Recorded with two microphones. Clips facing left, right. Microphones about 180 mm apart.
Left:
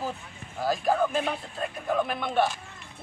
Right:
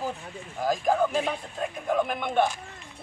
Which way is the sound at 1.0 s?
10° right (ahead or behind).